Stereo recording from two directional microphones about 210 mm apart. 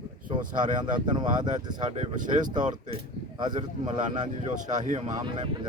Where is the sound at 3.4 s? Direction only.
20° right (ahead or behind).